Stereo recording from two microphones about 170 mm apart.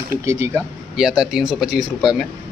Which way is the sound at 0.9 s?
Centre (ahead or behind).